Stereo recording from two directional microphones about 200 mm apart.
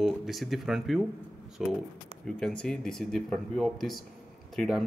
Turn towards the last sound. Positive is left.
turn(degrees=0)  # may be behind; listen again after turning